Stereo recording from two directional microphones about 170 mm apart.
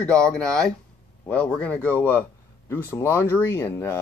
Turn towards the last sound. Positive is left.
turn(degrees=15)  # may be behind; listen again after turning